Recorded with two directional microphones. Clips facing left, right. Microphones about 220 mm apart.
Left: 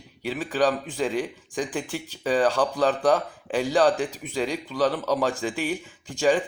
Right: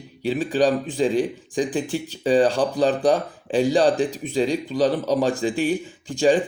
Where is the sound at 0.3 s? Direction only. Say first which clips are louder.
Right 4 dB; 20° right (ahead or behind).